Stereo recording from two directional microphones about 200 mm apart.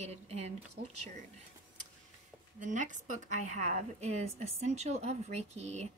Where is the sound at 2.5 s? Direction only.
40° right (ahead or behind).